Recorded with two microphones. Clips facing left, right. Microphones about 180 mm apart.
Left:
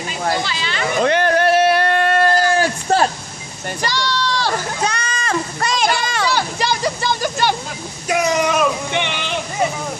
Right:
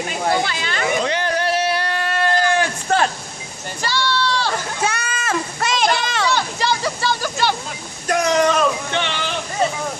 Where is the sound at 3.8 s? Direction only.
15° left (ahead or behind).